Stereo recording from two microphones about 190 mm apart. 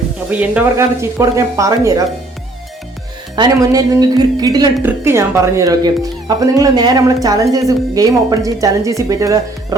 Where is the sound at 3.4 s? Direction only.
20° right (ahead or behind).